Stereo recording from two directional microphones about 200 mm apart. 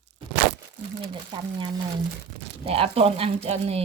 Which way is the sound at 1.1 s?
25° right (ahead or behind).